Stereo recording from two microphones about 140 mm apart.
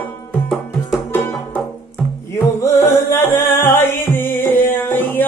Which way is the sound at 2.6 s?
15° left (ahead or behind).